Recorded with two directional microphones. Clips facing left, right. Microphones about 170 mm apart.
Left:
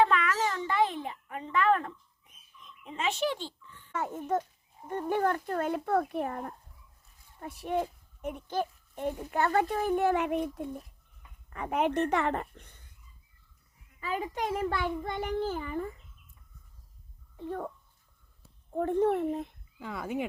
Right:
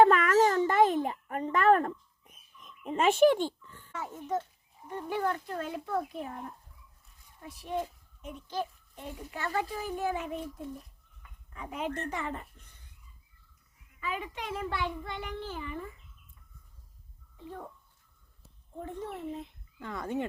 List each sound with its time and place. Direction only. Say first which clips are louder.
0.0 s babbling: right 5 dB; 45° right (ahead or behind)
2.6 s oink: right 8 dB; 45° right (ahead or behind)
3.9 s a child's voice: left 3 dB; 55° left (ahead or behind)
14.0 s a child's voice: left 4 dB; 35° left (ahead or behind)
17.3 s speech: left 7 dB; 55° left (ahead or behind)
18.7 s a child's voice: left 13 dB; 60° left (ahead or behind)
19.8 s speech: even; 10° left (ahead or behind)